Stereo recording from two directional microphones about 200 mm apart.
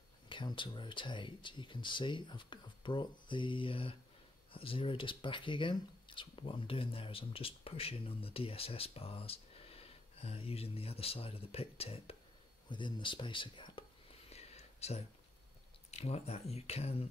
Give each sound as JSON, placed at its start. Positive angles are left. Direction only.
{"t": 0.3, "sound": "speech", "side_deg": 25}
{"t": 14.3, "sound": "a sound", "side_deg": 30}
{"t": 15.9, "sound": "speech", "side_deg": 30}